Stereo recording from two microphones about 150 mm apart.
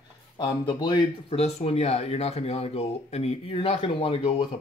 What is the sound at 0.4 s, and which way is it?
Speech, 30° left (ahead or behind).